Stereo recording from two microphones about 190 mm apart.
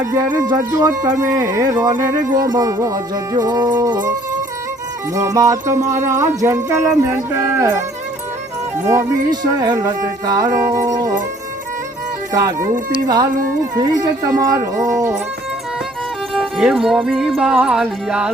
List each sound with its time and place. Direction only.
0.1 s speech: 15° right (ahead or behind)
5.1 s speech: 15° right (ahead or behind)
12.3 s speech: 20° right (ahead or behind)
13.7 s speech: 20° right (ahead or behind)
16.3 s music: centre (ahead or behind)